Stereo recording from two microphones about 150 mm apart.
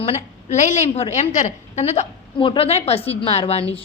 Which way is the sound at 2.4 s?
35° left (ahead or behind).